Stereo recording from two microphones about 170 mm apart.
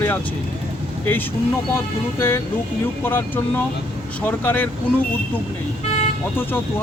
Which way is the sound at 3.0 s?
10° left (ahead or behind).